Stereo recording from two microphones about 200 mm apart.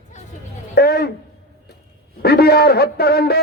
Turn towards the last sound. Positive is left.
turn(degrees=50)  # may be behind; listen again after turning